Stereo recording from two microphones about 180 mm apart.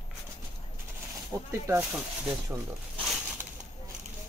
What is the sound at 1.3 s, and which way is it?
Speech, 15° right (ahead or behind).